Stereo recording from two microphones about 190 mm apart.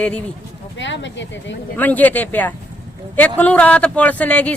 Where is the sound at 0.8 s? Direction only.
70° left (ahead or behind).